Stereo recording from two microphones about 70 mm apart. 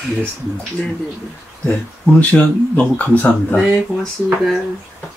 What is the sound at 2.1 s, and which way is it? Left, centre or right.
Speech, left.